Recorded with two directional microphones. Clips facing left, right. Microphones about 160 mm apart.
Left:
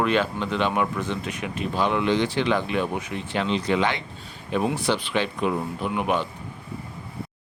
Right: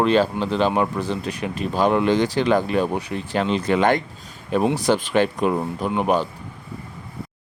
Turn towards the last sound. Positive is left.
turn(degrees=-40)  # may be behind; listen again after turning